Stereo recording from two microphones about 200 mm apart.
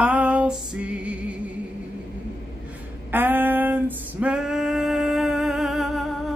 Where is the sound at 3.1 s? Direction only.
10° right (ahead or behind).